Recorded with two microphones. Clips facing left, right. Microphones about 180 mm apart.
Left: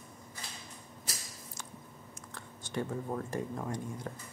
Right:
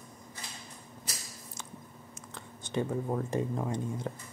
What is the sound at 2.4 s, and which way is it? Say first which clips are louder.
Speech: right 4 dB; 20° right (ahead or behind).